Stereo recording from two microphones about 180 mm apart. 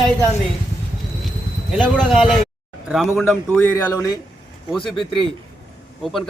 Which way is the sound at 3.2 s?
10° left (ahead or behind).